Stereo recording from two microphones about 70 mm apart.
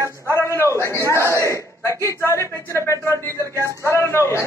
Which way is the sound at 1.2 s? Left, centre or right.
Right.